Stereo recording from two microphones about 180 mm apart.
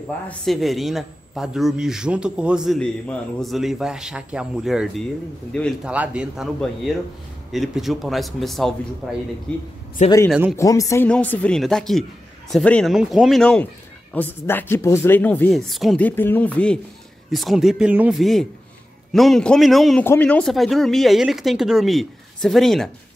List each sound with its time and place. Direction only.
0.3 s a man's voice: centre (ahead or behind)
10.0 s speech: 40° left (ahead or behind)
10.6 s a man's voice: 20° left (ahead or behind); by 22.8 s centre (ahead or behind)